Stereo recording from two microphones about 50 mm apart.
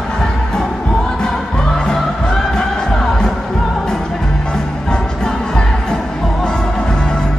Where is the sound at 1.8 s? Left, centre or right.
Centre.